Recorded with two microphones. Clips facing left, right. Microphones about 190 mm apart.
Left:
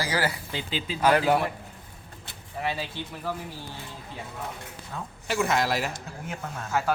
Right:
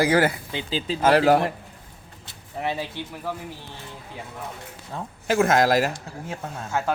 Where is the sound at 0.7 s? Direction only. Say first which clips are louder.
Right 4 dB; 30° right (ahead or behind).